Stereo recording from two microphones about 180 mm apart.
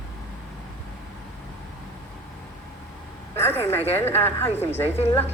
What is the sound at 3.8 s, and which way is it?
Speech, 35° left (ahead or behind).